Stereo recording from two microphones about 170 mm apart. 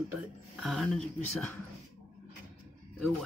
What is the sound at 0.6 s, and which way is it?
Speech, centre (ahead or behind).